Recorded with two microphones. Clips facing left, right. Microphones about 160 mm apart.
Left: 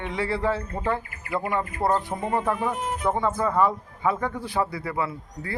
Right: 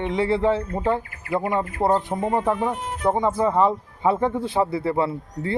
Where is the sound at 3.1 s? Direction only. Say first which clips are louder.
Right 5 dB; 15° right (ahead or behind).